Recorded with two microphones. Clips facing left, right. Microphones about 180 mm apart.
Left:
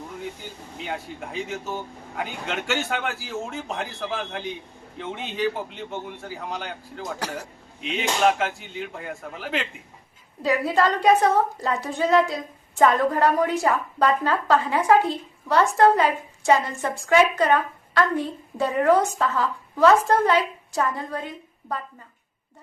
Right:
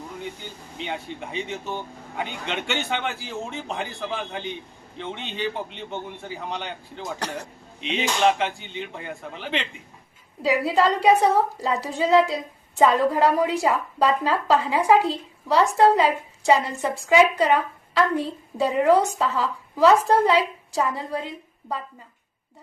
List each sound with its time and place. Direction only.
0.8 s a man's voice: 5° left (ahead or behind)
10.8 s a woman's voice: 10° right (ahead or behind)
15.0 s a woman's voice: 30° right (ahead or behind)
15.5 s a woman's voice: 10° right (ahead or behind)